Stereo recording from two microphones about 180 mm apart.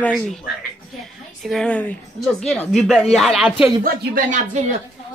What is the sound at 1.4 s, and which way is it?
A woman's voice, 5° left (ahead or behind).